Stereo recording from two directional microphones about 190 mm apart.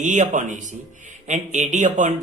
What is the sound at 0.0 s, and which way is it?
Speech, 40° right (ahead or behind).